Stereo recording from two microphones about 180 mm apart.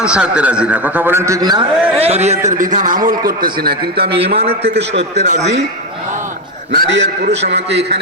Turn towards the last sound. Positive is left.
turn(degrees=-70)  # may be behind; listen again after turning